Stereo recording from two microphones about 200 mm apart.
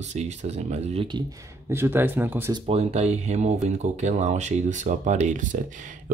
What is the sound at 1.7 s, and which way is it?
Speech, 10° right (ahead or behind).